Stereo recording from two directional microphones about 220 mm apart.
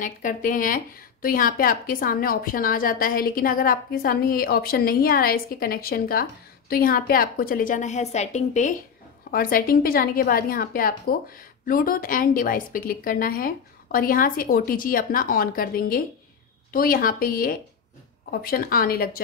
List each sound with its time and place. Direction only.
0.0 s a woman's voice: 35° left (ahead or behind)